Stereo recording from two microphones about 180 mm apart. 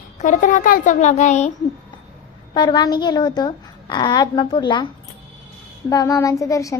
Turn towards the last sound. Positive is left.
turn(degrees=20)  # may be behind; listen again after turning